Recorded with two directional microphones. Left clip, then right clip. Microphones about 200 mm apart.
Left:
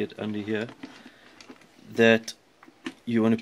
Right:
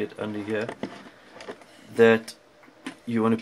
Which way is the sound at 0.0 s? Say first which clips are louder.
Right 1 dB; 55° left (ahead or behind).